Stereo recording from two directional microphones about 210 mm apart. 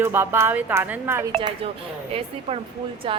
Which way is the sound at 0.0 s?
10° right (ahead or behind).